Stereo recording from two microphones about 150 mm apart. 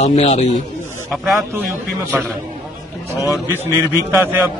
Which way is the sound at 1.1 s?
Centre (ahead or behind).